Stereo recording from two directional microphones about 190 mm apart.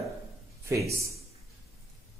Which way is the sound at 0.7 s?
15° right (ahead or behind).